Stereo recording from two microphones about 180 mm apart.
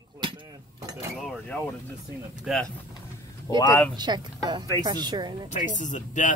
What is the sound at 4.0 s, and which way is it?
Speech, 25° right (ahead or behind).